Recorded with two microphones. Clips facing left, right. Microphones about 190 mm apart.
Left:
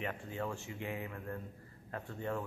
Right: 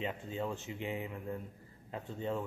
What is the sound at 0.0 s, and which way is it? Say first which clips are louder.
Speech: right 2 dB; 20° right (ahead or behind).